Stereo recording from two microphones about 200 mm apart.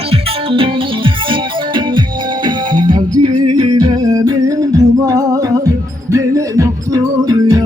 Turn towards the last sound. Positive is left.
turn(degrees=-20)  # may be behind; listen again after turning